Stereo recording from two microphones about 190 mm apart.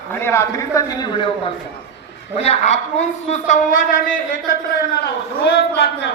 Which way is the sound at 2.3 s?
35° left (ahead or behind).